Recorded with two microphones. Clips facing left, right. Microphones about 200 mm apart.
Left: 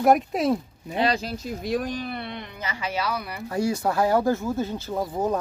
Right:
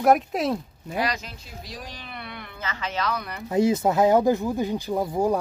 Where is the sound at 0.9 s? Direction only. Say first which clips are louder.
Left 4 dB; 30° left (ahead or behind); by 2.1 s 45° left (ahead or behind).